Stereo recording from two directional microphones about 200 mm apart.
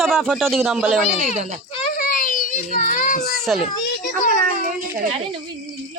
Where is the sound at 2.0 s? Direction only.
45° left (ahead or behind).